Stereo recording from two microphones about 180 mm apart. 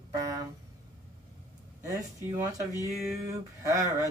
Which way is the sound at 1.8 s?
15° right (ahead or behind).